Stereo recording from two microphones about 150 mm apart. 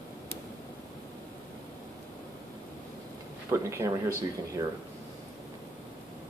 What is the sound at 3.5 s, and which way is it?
Speech, 20° right (ahead or behind).